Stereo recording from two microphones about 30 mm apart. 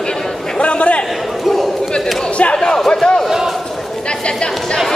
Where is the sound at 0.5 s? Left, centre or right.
Left.